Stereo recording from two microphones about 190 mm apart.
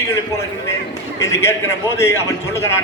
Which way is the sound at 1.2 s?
15° left (ahead or behind).